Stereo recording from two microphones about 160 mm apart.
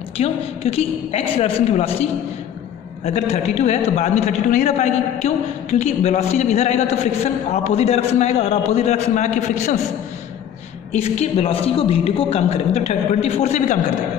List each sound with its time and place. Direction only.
0.2 s a man's voice: 40° left (ahead or behind)
3.1 s a man's voice: 45° left (ahead or behind)
10.9 s a man's voice: 40° left (ahead or behind)